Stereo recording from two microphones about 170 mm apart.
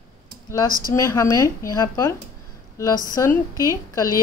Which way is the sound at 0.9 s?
20° left (ahead or behind).